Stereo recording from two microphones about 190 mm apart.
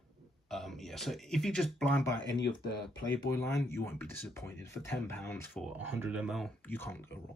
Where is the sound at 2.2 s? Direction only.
65° left (ahead or behind).